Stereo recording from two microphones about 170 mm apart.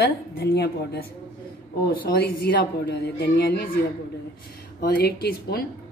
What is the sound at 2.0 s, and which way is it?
A woman's voice, 65° left (ahead or behind).